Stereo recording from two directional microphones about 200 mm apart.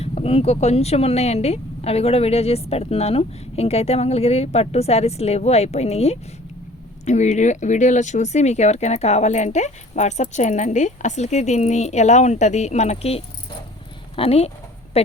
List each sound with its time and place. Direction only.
0.0 s speech: 30° left (ahead or behind)